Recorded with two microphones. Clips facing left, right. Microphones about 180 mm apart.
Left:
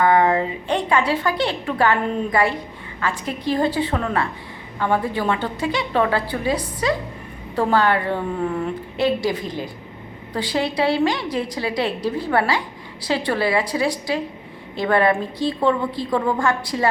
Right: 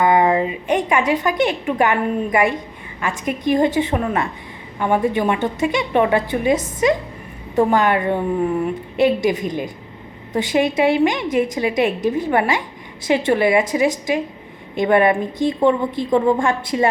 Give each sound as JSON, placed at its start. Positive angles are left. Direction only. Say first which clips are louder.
{"t": 0.0, "sound": "a woman's voice", "louder": "right 1 dB", "side_deg": -20}